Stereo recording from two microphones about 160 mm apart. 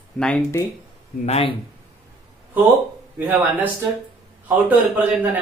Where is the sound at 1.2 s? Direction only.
40° left (ahead or behind).